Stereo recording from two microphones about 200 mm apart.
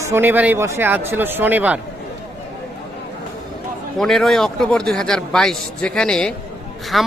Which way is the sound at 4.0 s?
Centre (ahead or behind).